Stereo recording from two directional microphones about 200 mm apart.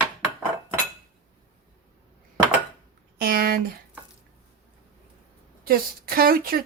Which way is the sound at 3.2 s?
45° right (ahead or behind).